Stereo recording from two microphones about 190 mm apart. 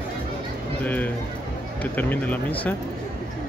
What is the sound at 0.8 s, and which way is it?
Speech, 10° left (ahead or behind).